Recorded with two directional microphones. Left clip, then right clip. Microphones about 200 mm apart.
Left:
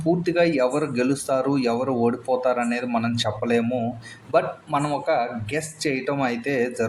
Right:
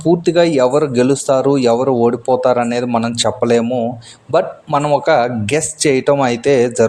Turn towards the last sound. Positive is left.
turn(degrees=-40)  # may be behind; listen again after turning